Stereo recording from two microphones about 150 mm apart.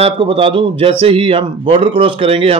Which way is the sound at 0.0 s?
35° right (ahead or behind).